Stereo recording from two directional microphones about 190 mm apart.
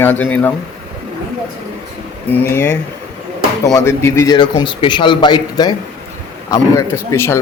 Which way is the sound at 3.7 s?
15° left (ahead or behind).